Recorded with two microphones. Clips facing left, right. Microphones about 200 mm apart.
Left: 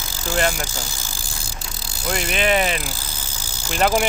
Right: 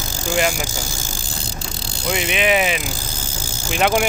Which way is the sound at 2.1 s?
Centre (ahead or behind).